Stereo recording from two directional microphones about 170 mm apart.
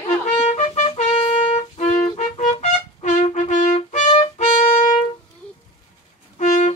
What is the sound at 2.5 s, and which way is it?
Trumpet, 45° left (ahead or behind).